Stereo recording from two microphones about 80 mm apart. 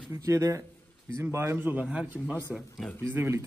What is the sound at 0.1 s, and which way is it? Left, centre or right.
A man's voice, right.